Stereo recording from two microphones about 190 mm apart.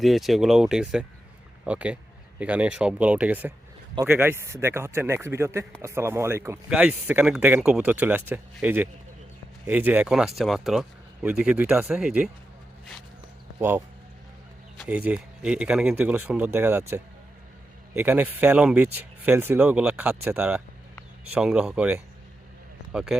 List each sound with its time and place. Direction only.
0.0 s speech: centre (ahead or behind)
13.6 s speech: 10° right (ahead or behind)